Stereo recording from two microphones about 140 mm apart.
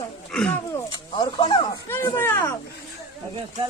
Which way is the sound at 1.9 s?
15° left (ahead or behind).